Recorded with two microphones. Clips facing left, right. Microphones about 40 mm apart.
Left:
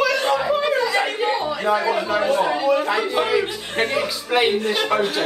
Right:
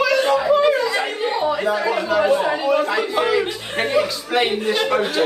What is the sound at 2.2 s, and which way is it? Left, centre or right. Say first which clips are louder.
Speech: right 2 dB; centre.